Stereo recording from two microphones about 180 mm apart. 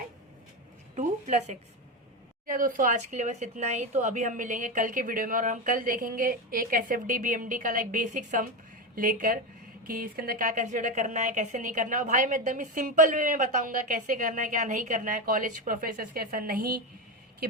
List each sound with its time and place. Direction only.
0.9 s a woman's voice: 40° right (ahead or behind)